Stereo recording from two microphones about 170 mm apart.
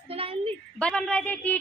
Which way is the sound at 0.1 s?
35° right (ahead or behind).